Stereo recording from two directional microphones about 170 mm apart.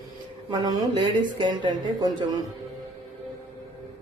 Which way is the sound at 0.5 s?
25° right (ahead or behind).